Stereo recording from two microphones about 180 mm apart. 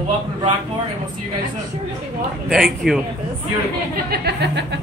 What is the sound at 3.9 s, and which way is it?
Speech, 60° right (ahead or behind).